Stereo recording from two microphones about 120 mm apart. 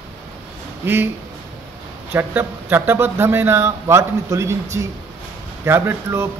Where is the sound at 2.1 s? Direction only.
20° right (ahead or behind).